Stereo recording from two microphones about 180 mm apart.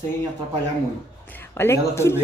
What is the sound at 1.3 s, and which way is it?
Speech, 15° left (ahead or behind).